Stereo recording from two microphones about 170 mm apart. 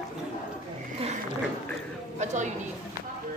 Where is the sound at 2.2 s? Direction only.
45° right (ahead or behind).